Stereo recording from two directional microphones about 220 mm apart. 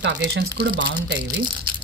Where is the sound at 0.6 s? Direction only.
45° right (ahead or behind).